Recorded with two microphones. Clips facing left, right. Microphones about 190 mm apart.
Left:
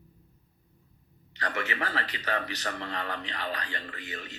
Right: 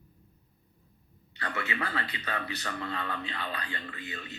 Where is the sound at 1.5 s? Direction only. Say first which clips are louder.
Left 1 dB; 35° left (ahead or behind).